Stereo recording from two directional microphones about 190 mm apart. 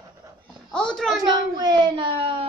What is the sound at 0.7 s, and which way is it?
Speech, 5° left (ahead or behind).